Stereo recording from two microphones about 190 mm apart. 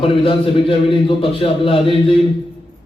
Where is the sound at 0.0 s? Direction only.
30° left (ahead or behind).